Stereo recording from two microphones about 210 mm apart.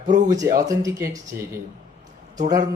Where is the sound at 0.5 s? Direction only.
15° right (ahead or behind).